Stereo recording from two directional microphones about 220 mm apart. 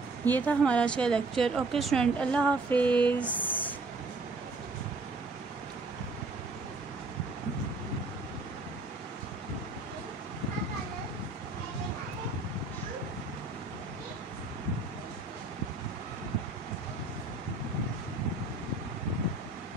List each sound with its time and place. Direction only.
0.2 s a woman's voice: 5° left (ahead or behind)